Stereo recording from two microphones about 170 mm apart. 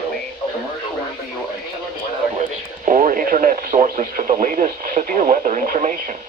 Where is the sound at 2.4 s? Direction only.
50° right (ahead or behind).